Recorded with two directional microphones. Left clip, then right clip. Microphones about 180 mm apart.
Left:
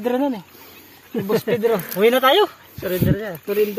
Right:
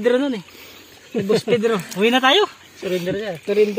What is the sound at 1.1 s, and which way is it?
Speech, 45° left (ahead or behind).